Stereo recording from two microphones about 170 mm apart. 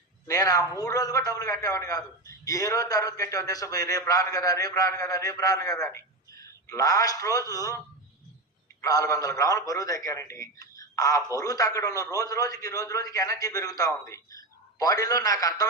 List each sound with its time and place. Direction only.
0.3 s a man's voice: 20° left (ahead or behind)
8.8 s a man's voice: 20° left (ahead or behind)